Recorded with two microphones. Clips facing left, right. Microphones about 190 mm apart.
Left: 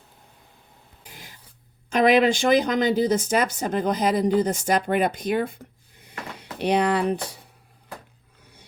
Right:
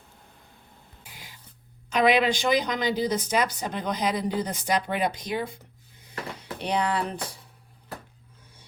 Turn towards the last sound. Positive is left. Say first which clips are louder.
# left 5 dB
turn(degrees=65)  # may be behind; listen again after turning